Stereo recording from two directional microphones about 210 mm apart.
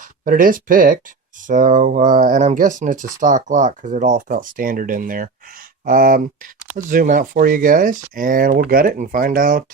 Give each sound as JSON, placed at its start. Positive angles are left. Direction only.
{"t": 0.0, "sound": "speech", "side_deg": -40}